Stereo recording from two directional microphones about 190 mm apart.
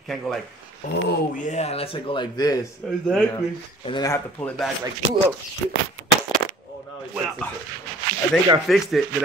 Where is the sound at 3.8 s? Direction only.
20° left (ahead or behind).